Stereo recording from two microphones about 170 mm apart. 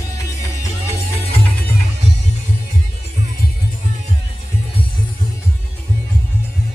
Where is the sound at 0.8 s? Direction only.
35° left (ahead or behind).